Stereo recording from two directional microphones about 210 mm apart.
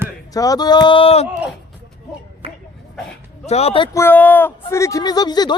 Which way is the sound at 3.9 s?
10° left (ahead or behind).